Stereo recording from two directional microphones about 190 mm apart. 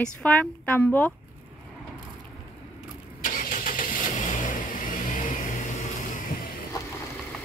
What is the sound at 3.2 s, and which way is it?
Vehicle, 45° left (ahead or behind).